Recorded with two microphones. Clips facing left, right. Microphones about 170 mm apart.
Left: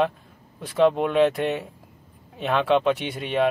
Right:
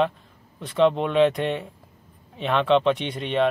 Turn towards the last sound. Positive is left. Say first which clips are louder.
# even
turn(degrees=5)  # may be behind; listen again after turning